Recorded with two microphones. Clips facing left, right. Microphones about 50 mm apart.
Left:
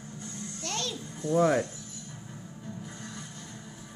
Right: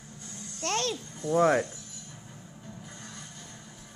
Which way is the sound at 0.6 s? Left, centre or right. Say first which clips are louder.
Right 6 dB; right.